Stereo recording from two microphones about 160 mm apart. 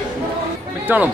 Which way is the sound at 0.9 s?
10° right (ahead or behind).